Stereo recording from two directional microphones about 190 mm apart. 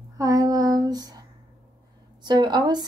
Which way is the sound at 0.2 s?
20° right (ahead or behind).